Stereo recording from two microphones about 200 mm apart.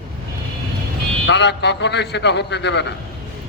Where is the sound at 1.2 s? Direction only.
60° left (ahead or behind).